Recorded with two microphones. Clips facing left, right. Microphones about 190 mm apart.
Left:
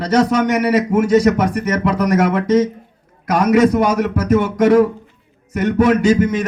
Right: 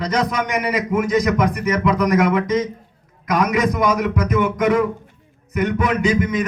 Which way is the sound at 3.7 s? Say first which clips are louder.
Left 3 dB; 30° left (ahead or behind).